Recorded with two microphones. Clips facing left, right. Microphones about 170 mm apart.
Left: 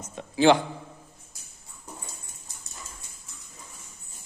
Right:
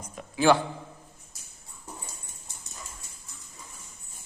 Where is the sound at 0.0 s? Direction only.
25° left (ahead or behind).